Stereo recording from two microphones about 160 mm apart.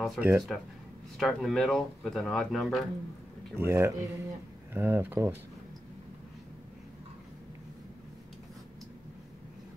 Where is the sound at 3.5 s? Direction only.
15° right (ahead or behind).